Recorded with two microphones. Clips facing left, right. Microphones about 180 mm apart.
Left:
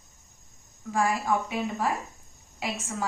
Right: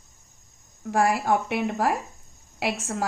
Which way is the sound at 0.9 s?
70° right (ahead or behind).